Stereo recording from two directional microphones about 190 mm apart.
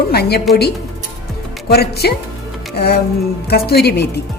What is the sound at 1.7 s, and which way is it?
Speech, 55° left (ahead or behind).